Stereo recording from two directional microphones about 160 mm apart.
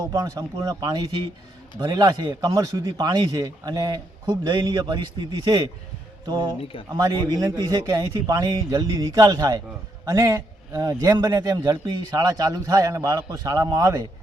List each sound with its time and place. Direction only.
0.0 s a man's voice: 25° right (ahead or behind)